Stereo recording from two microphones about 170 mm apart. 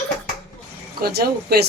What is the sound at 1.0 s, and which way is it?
Speech, 65° right (ahead or behind).